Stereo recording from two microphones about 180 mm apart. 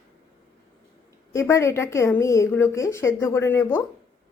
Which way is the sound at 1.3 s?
15° left (ahead or behind).